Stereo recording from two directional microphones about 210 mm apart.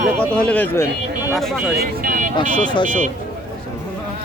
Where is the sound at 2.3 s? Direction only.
20° left (ahead or behind).